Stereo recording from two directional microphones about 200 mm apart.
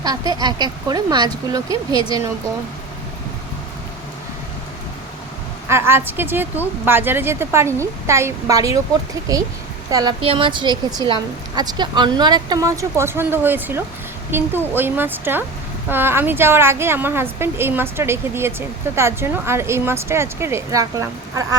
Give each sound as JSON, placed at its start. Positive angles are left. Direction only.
{"t": 0.0, "sound": "speech", "side_deg": -20}
{"t": 5.6, "sound": "a woman's voice", "side_deg": -10}
{"t": 9.9, "sound": "a woman's voice", "side_deg": -20}